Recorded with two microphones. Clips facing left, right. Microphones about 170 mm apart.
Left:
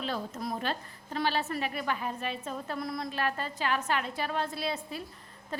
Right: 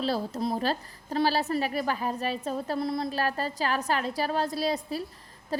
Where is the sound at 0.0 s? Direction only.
30° right (ahead or behind).